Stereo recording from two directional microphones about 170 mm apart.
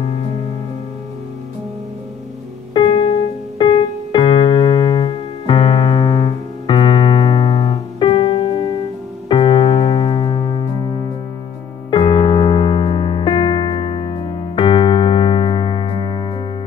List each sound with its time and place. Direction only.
2.7 s piano: 30° left (ahead or behind)
9.3 s keyboard: 25° left (ahead or behind)
11.9 s music: 30° left (ahead or behind)